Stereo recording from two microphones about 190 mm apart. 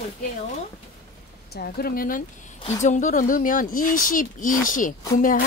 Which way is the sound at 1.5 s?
55° left (ahead or behind).